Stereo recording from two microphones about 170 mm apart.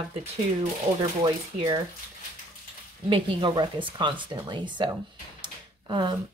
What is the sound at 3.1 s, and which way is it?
Speech, 25° right (ahead or behind).